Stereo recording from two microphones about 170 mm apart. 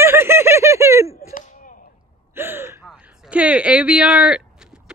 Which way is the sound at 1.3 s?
55° left (ahead or behind).